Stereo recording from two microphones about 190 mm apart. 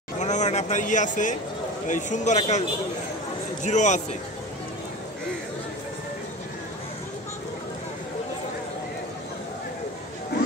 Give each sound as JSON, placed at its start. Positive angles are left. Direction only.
{"t": 0.2, "sound": "a sound", "side_deg": 40}
{"t": 1.9, "sound": "a man's voice", "side_deg": 40}
{"t": 3.6, "sound": "a man's voice", "side_deg": 40}